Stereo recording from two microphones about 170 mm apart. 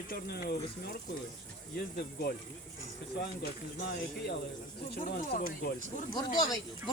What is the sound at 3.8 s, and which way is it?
Speech, 75° left (ahead or behind).